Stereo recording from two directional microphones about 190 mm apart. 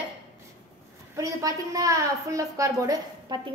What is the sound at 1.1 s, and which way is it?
A woman's voice, 15° right (ahead or behind).